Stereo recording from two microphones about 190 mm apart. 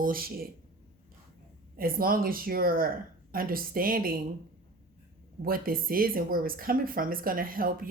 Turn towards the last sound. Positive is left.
turn(degrees=-50)  # may be behind; listen again after turning